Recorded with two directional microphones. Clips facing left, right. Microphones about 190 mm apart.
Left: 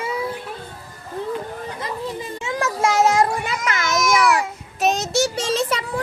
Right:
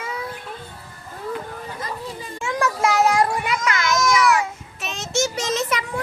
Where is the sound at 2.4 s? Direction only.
25° left (ahead or behind).